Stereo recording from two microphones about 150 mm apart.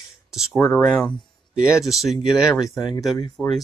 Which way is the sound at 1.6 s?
Centre (ahead or behind).